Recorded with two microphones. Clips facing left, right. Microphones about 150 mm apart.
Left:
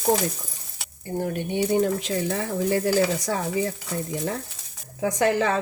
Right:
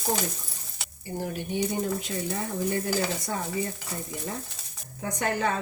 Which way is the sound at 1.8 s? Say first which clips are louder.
Left 6 dB; 90° left.